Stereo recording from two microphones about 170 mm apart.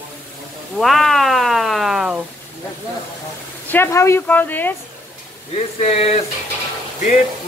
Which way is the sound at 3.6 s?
15° left (ahead or behind).